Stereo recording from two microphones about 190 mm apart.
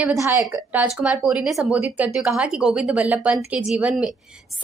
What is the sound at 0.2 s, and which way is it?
Speech, 15° right (ahead or behind).